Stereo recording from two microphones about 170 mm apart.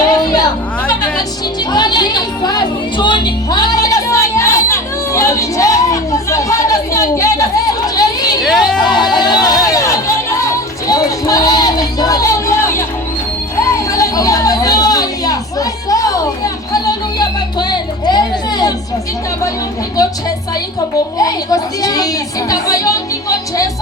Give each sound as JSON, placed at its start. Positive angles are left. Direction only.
{"t": 0.1, "sound": "music", "side_deg": 20}
{"t": 1.7, "sound": "music", "side_deg": 25}
{"t": 8.4, "sound": "a sound", "side_deg": 0}
{"t": 8.8, "sound": "a sound", "side_deg": 25}
{"t": 9.1, "sound": "chatter", "side_deg": 25}
{"t": 13.9, "sound": "a sound", "side_deg": 20}
{"t": 16.7, "sound": "music", "side_deg": 25}
{"t": 20.0, "sound": "a woman's voice", "side_deg": 20}
{"t": 21.2, "sound": "a woman's voice", "side_deg": 20}